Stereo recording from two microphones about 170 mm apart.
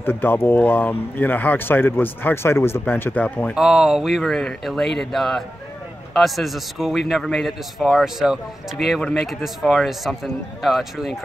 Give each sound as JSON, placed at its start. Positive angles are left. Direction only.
{"t": 0.0, "sound": "speech", "side_deg": 10}
{"t": 3.5, "sound": "a man's voice", "side_deg": 0}